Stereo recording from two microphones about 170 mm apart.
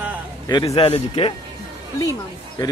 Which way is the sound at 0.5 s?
25° left (ahead or behind).